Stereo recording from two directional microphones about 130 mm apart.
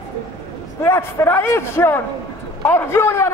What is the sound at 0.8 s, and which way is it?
A man's voice, 20° left (ahead or behind).